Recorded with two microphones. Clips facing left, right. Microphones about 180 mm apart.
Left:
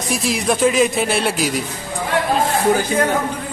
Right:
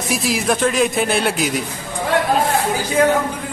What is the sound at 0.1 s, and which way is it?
Speech, centre (ahead or behind).